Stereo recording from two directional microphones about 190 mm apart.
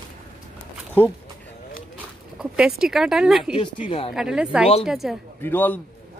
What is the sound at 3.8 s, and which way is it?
Speech, 30° left (ahead or behind).